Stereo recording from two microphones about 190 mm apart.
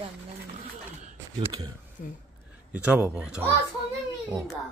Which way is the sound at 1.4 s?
20° right (ahead or behind).